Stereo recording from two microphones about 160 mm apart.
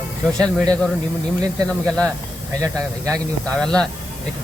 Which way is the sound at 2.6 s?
20° right (ahead or behind).